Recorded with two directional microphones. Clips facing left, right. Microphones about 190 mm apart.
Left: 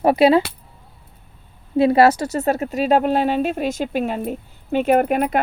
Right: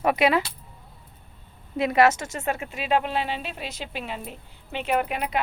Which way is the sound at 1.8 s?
30° left (ahead or behind).